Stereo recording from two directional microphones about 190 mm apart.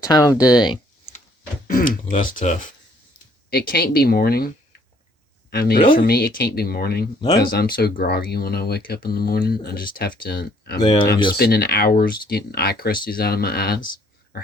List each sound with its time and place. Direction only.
0.0 s speech: 15° left (ahead or behind)
1.6 s speech: 45° left (ahead or behind)
3.5 s speech: 50° left (ahead or behind)
7.2 s speech: 20° left (ahead or behind)
7.5 s speech: 55° left (ahead or behind)
10.8 s speech: 25° left (ahead or behind)
11.3 s speech: 55° left (ahead or behind)